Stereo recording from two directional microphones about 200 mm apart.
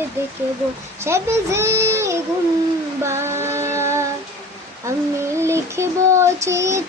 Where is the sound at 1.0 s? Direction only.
15° right (ahead or behind).